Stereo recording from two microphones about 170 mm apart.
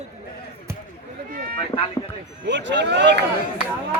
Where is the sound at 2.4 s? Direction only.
90° right.